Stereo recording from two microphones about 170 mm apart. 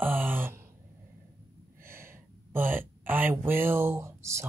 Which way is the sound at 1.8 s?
15° right (ahead or behind).